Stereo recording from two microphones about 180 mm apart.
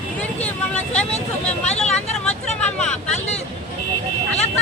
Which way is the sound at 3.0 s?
40° left (ahead or behind).